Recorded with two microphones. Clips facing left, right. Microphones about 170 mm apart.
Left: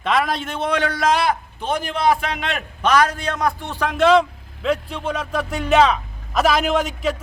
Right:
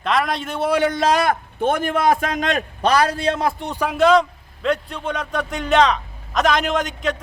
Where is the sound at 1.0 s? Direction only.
45° right (ahead or behind); by 3.7 s 30° right (ahead or behind).